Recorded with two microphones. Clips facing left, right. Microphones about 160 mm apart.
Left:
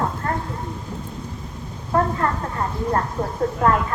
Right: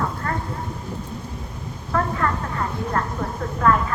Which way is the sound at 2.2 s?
30° left (ahead or behind).